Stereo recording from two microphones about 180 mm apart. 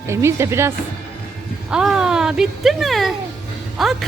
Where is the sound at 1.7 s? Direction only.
5° right (ahead or behind).